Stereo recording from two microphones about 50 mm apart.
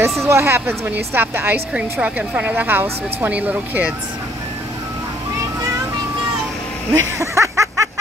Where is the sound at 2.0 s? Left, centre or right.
Right.